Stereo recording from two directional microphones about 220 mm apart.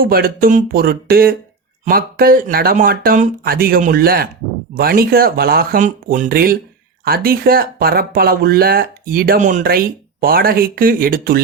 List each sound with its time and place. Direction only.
0.0 s speech: 40° right (ahead or behind)